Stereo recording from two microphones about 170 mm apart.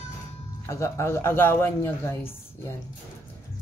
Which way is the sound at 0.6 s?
15° left (ahead or behind).